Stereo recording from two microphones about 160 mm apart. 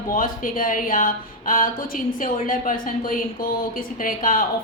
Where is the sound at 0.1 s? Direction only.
55° left (ahead or behind).